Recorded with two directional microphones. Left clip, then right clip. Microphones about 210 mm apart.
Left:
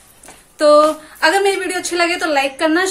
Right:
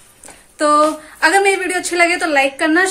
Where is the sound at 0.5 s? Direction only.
Centre (ahead or behind).